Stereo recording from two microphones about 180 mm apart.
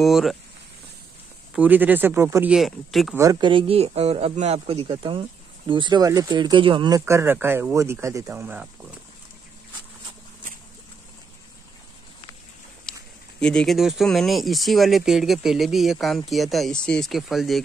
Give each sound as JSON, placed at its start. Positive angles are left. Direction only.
{"t": 0.0, "sound": "speech", "side_deg": 0}
{"t": 1.5, "sound": "speech", "side_deg": -10}
{"t": 3.2, "sound": "a man's voice", "side_deg": -20}
{"t": 12.9, "sound": "a sound", "side_deg": 5}
{"t": 13.4, "sound": "speech", "side_deg": 5}